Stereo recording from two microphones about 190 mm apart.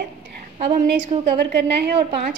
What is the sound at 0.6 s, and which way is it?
Speech, 40° right (ahead or behind).